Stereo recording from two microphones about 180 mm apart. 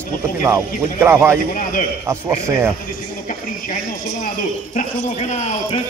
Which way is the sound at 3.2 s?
50° left (ahead or behind).